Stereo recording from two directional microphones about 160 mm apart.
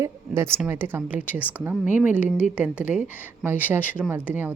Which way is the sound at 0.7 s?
15° right (ahead or behind).